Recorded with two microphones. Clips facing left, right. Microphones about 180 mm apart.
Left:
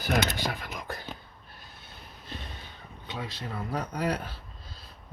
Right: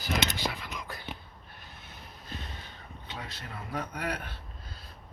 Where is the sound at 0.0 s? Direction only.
50° left (ahead or behind).